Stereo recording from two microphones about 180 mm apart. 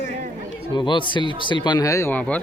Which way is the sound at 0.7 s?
25° left (ahead or behind).